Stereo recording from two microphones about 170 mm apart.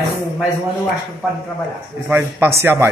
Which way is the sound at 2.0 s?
15° right (ahead or behind).